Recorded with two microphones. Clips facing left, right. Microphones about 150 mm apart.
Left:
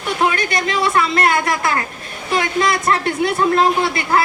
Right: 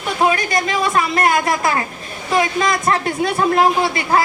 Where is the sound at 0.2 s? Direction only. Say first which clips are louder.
Right 2 dB; 20° right (ahead or behind).